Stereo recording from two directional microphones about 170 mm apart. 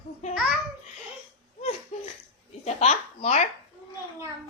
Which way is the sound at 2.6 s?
40° left (ahead or behind).